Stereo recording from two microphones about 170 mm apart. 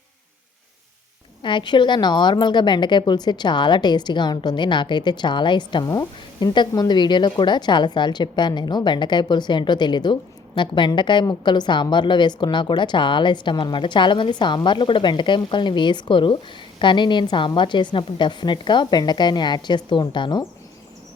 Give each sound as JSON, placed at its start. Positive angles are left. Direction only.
{"t": 1.4, "sound": "a woman's voice", "side_deg": 30}